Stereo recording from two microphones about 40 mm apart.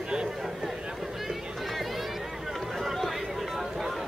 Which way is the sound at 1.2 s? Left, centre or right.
Centre.